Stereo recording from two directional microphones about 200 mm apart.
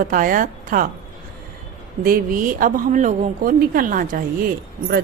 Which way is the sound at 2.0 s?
40° right (ahead or behind).